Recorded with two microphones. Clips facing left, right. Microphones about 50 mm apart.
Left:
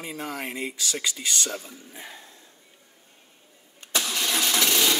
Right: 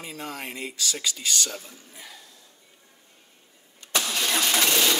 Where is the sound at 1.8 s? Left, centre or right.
Left.